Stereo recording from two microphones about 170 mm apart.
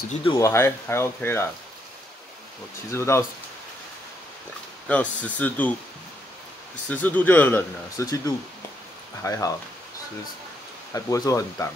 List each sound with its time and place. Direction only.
0.2 s speech: 25° left (ahead or behind)
0.5 s speech: 15° left (ahead or behind)
2.9 s speech: 15° left (ahead or behind)
4.8 s speech: 10° left (ahead or behind)
6.9 s speech: 10° left (ahead or behind)
9.2 s speech: 20° left (ahead or behind)
10.9 s speech: 20° left (ahead or behind)